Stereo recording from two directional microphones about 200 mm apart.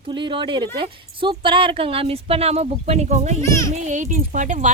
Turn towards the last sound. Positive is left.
turn(degrees=-40)  # may be behind; listen again after turning